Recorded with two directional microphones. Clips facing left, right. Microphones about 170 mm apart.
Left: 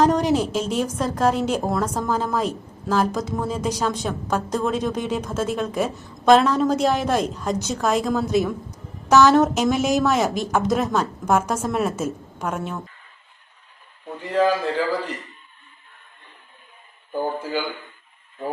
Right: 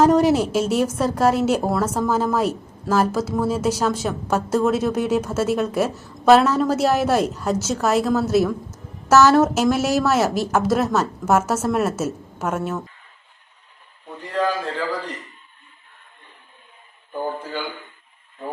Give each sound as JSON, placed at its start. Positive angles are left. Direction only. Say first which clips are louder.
{"t": 0.0, "sound": "a woman's voice", "louder": "right 3 dB", "side_deg": -5}